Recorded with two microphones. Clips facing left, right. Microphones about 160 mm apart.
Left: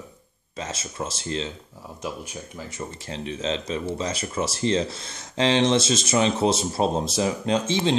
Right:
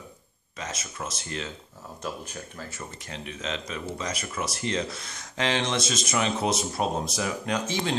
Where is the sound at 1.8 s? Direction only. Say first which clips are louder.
Left 2 dB; 10° left (ahead or behind).